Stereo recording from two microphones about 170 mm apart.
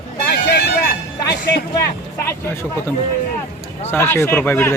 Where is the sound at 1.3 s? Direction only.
75° left (ahead or behind).